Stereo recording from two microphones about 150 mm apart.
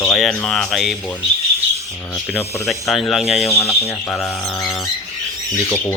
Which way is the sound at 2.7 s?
Centre (ahead or behind).